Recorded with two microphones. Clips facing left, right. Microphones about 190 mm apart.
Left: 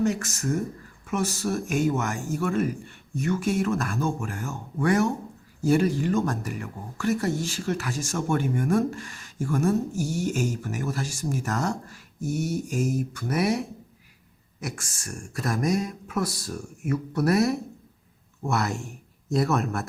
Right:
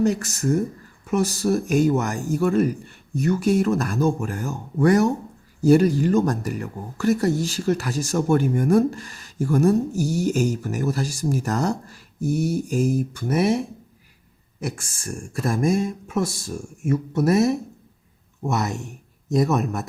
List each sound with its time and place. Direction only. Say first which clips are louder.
0.0 s speech: right 4 dB; 35° right (ahead or behind); by 19.9 s 20° right (ahead or behind)